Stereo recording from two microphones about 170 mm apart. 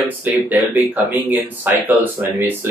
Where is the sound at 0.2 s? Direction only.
10° right (ahead or behind).